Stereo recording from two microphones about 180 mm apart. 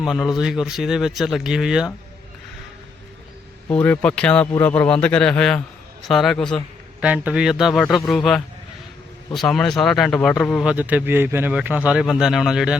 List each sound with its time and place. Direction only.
0.0 s speech: centre (ahead or behind)
3.7 s a man's voice: 10° left (ahead or behind)
7.0 s speech: 5° right (ahead or behind)
10.7 s speech: 10° right (ahead or behind)